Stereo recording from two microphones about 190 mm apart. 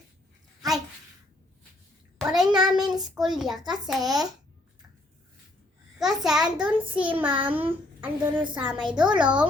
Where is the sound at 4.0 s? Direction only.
20° right (ahead or behind).